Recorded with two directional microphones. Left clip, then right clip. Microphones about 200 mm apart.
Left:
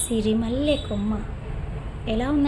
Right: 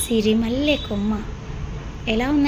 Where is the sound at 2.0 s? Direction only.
Centre (ahead or behind).